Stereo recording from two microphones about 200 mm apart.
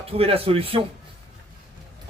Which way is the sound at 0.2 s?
30° right (ahead or behind).